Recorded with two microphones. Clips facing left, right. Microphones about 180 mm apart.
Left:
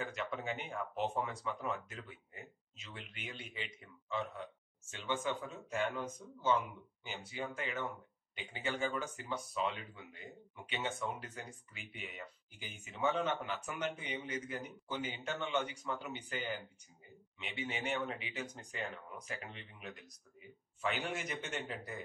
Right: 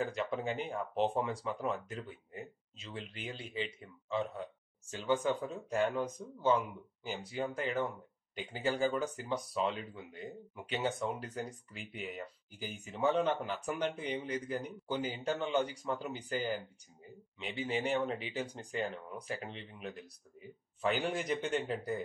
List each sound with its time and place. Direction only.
0.0 s speech: 35° right (ahead or behind)